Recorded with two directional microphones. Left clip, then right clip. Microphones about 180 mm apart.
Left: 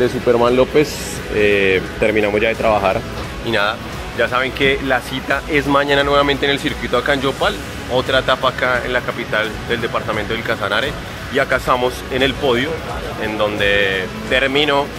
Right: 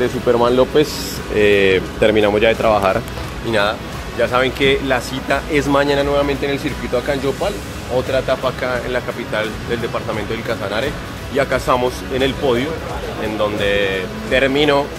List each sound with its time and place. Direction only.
0.0 s speech: 5° left (ahead or behind)
1.3 s speech: 5° right (ahead or behind)
2.7 s speech: 20° right (ahead or behind)
4.2 s speech: 5° right (ahead or behind)